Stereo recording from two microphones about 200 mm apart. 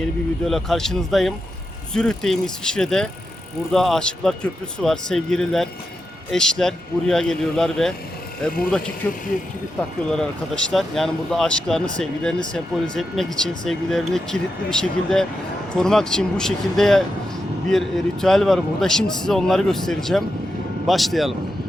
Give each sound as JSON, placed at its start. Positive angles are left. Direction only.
{"t": 0.0, "sound": "a man's voice", "side_deg": 0}
{"t": 9.0, "sound": "a man's voice", "side_deg": 10}